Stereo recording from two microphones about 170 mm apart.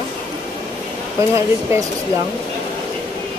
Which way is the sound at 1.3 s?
15° right (ahead or behind).